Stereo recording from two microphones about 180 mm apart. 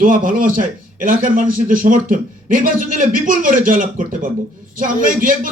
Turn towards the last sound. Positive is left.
turn(degrees=-50)  # may be behind; listen again after turning